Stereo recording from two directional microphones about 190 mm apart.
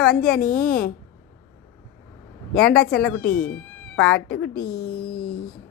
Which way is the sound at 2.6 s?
5° left (ahead or behind).